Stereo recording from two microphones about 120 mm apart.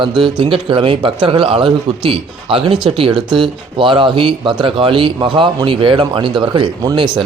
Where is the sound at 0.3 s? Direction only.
45° right (ahead or behind).